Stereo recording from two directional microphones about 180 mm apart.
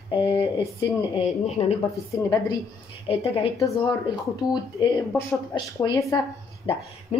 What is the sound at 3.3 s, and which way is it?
A woman's voice, 20° left (ahead or behind).